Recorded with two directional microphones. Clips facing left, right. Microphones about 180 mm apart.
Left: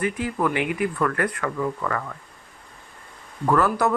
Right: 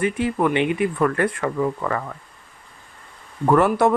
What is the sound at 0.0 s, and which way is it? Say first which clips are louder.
Speech: right 4 dB; 25° right (ahead or behind).